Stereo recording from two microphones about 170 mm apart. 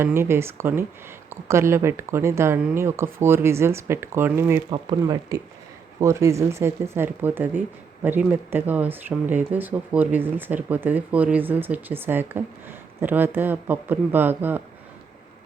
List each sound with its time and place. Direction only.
0.0 s speech: 15° right (ahead or behind)
4.7 s speech: 25° right (ahead or behind)